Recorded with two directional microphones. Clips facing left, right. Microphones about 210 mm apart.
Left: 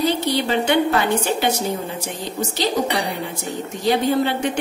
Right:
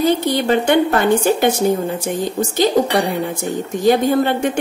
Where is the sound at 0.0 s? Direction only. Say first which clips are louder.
Right 4 dB; 50° right (ahead or behind).